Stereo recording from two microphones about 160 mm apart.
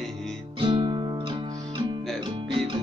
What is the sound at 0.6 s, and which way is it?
Music, 30° right (ahead or behind).